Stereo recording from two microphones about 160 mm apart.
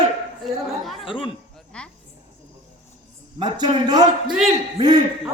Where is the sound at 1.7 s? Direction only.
5° left (ahead or behind).